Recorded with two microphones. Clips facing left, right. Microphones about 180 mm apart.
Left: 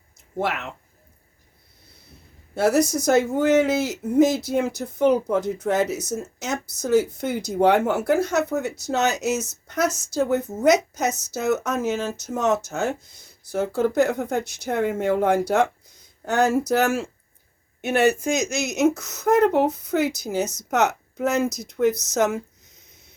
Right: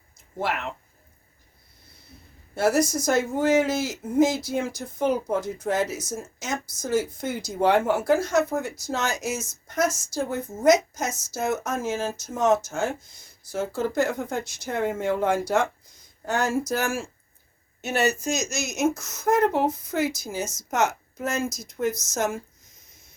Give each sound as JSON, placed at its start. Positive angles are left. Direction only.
{"t": 0.3, "sound": "speech", "side_deg": 65}
{"t": 2.6, "sound": "speech", "side_deg": 60}
{"t": 17.7, "sound": "speech", "side_deg": 55}